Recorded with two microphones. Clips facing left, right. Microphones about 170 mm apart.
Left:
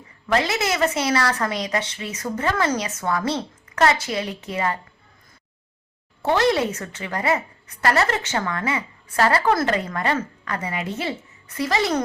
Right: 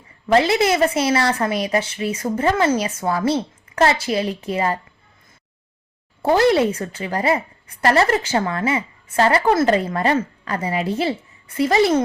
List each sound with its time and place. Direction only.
0.3 s a woman's voice: 25° right (ahead or behind)
6.2 s a woman's voice: 30° right (ahead or behind)